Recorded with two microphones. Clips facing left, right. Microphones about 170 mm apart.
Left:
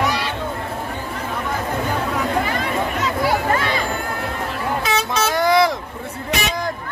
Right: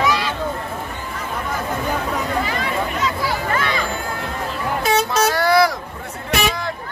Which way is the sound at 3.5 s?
40° left (ahead or behind).